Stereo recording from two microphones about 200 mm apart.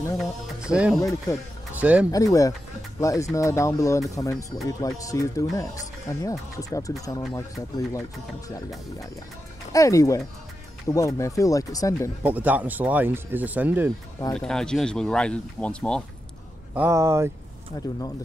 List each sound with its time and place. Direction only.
0.6 s speech: 5° right (ahead or behind)
0.9 s speech: 15° left (ahead or behind)
1.8 s speech: 5° right (ahead or behind)
2.0 s speech: 15° left (ahead or behind)
9.7 s speech: 15° left (ahead or behind)
12.2 s speech: 10° right (ahead or behind)
14.3 s speech: 5° left (ahead or behind)
16.7 s speech: 15° right (ahead or behind)
17.7 s speech: 20° left (ahead or behind)